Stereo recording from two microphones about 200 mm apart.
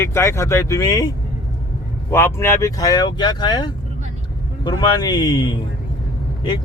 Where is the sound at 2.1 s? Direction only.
10° left (ahead or behind).